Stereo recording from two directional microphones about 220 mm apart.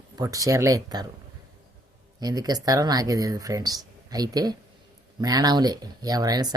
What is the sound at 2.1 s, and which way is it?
Speech, 15° right (ahead or behind).